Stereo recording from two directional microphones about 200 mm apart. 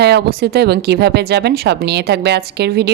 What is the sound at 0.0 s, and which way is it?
Speech, 55° right (ahead or behind).